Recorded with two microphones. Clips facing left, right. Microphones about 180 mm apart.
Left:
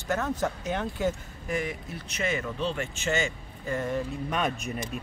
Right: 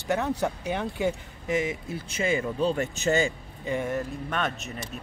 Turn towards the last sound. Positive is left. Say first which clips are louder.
# left 2 dB
turn(degrees=10)  # may be behind; listen again after turning